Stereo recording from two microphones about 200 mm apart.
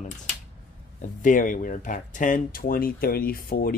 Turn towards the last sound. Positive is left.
turn(degrees=45)  # may be behind; listen again after turning